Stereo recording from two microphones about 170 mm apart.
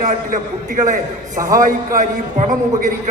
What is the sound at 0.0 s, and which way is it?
A man's voice, 50° right (ahead or behind).